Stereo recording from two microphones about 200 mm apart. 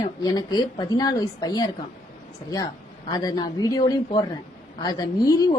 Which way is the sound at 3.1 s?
20° left (ahead or behind).